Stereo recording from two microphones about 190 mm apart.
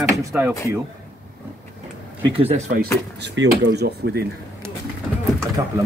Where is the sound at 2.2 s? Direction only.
30° right (ahead or behind).